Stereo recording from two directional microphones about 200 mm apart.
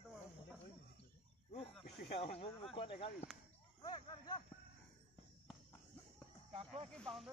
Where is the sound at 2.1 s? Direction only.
30° left (ahead or behind).